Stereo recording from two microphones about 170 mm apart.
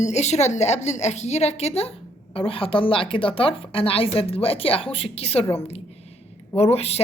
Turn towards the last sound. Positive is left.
turn(degrees=40)  # may be behind; listen again after turning